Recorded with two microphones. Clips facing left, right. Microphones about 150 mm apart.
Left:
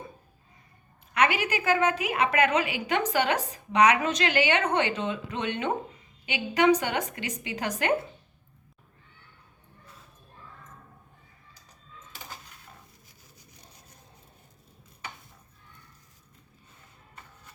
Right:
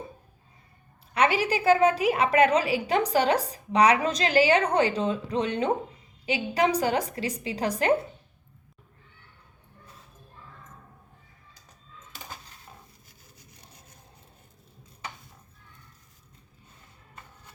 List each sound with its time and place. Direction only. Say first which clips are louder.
1.1 s a woman's voice: right 2 dB; 35° right (ahead or behind)